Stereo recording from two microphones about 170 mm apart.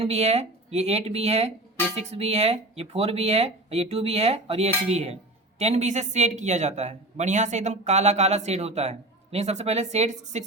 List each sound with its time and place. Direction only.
0.0 s speech: 40° right (ahead or behind)